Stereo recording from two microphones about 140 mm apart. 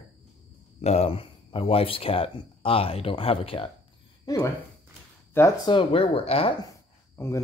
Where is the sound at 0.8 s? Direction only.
50° left (ahead or behind).